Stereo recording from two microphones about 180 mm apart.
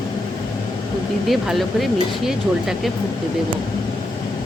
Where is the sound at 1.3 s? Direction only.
Centre (ahead or behind).